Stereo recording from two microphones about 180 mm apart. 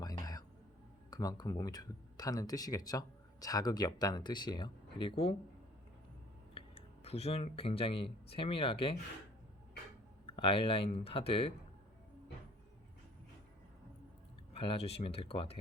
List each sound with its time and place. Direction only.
0.0 s music: 20° left (ahead or behind)
1.1 s speech: 20° left (ahead or behind)
6.5 s speech: 30° left (ahead or behind)
10.2 s speech: 30° left (ahead or behind)
14.5 s speech: 30° left (ahead or behind)